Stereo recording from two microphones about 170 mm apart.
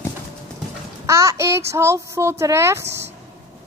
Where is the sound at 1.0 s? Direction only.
20° right (ahead or behind).